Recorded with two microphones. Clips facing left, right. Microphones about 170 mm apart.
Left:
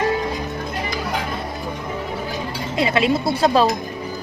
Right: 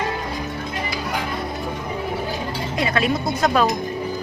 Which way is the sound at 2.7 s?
25° left (ahead or behind).